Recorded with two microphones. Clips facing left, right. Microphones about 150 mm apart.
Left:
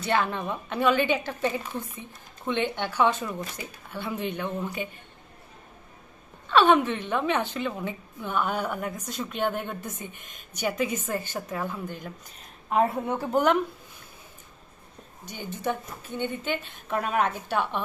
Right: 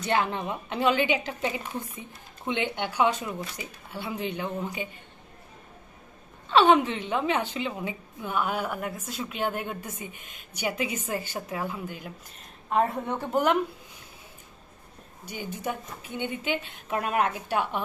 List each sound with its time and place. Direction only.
0.0 s a woman's voice: 15° right (ahead or behind)
6.5 s a woman's voice: 15° right (ahead or behind)
10.1 s a woman's voice: 50° left (ahead or behind)
10.5 s a woman's voice: 10° right (ahead or behind)
12.7 s a woman's voice: 5° left (ahead or behind)
15.3 s a woman's voice: 10° right (ahead or behind)